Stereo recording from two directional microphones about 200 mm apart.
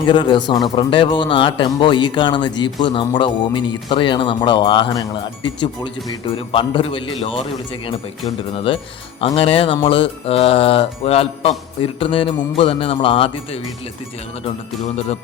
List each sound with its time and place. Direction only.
0.1 s a man's voice: 25° left (ahead or behind)
8.5 s a man's voice: 25° left (ahead or behind)